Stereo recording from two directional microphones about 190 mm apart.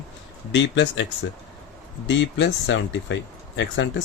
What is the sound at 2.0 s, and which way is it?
Speech, 70° left (ahead or behind).